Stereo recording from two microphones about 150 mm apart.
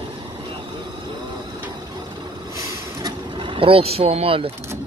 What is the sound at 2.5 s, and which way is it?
Vehicle, 30° right (ahead or behind).